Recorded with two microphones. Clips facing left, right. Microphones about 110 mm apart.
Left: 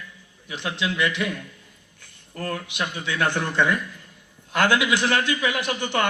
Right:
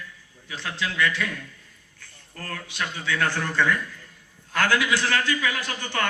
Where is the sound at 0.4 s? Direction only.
20° left (ahead or behind).